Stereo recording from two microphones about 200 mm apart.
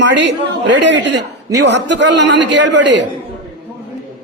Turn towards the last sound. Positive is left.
turn(degrees=-60)  # may be behind; listen again after turning